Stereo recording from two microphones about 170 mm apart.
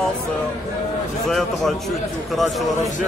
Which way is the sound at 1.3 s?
Centre (ahead or behind).